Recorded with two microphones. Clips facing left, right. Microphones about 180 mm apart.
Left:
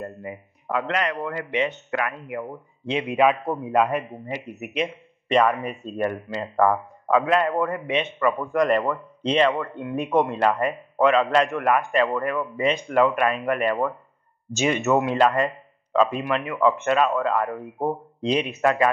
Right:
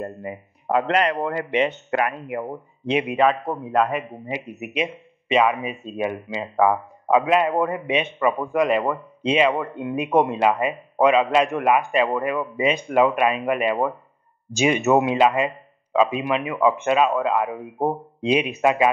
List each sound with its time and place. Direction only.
0.0 s a man's voice: 30° right (ahead or behind)
3.1 s speech: 5° left (ahead or behind)
7.1 s a man's voice: 15° right (ahead or behind)
9.6 s a man's voice: 20° right (ahead or behind)